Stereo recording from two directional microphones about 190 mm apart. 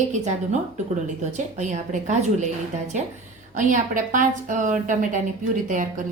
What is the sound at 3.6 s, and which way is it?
A woman's voice, 40° right (ahead or behind).